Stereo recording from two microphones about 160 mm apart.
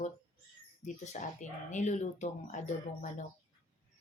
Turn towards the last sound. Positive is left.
turn(degrees=50)  # may be behind; listen again after turning